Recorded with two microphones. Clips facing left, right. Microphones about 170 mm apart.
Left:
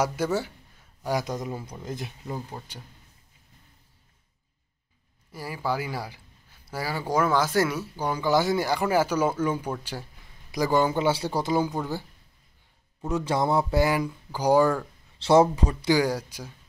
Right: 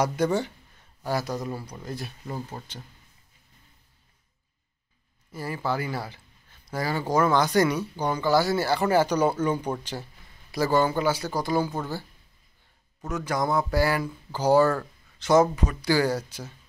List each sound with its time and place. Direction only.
0.0 s speech: 5° left (ahead or behind)
1.0 s speech: 15° left (ahead or behind)
2.2 s speech: centre (ahead or behind)
5.3 s speech: 10° left (ahead or behind)
13.1 s speech: 30° left (ahead or behind)
15.1 s speech: 30° left (ahead or behind)
15.9 s speech: 10° left (ahead or behind)